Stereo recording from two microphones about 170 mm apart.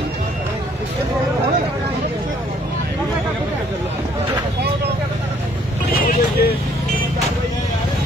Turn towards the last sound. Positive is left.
turn(degrees=60)  # may be behind; listen again after turning